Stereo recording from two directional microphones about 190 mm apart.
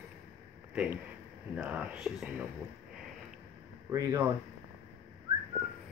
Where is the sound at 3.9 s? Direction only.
20° right (ahead or behind).